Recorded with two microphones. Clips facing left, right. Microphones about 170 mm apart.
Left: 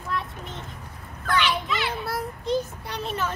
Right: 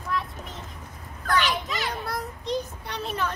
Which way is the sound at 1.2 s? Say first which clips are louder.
Left 1 dB; 40° right (ahead or behind).